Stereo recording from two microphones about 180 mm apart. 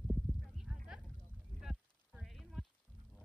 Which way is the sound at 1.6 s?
5° right (ahead or behind).